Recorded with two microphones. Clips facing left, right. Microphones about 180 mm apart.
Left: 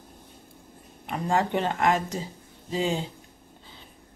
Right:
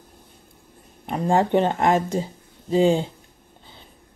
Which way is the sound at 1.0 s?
30° right (ahead or behind).